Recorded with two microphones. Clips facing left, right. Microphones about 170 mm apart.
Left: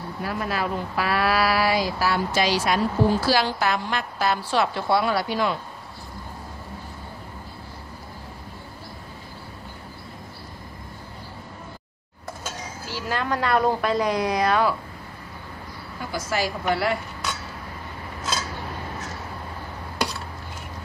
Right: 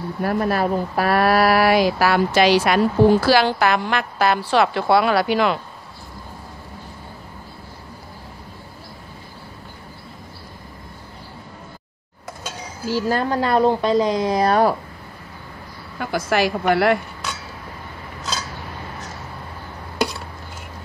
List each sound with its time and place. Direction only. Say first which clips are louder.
0.2 s speech: right 7 dB; 50° right (ahead or behind); by 5.6 s 80° right
12.8 s a woman's voice: right 8 dB; 40° right (ahead or behind)
16.0 s a woman's voice: right 7 dB; 65° right (ahead or behind)